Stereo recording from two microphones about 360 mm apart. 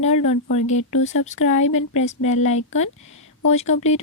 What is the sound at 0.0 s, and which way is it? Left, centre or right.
Speech, centre.